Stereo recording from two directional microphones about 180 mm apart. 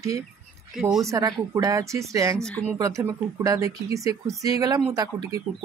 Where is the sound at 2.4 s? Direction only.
5° left (ahead or behind).